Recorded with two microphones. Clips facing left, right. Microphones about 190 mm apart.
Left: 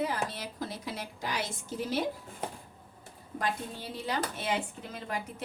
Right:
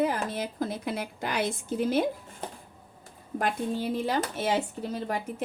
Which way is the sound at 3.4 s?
50° right (ahead or behind).